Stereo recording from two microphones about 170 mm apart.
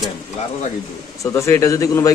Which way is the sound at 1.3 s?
15° left (ahead or behind).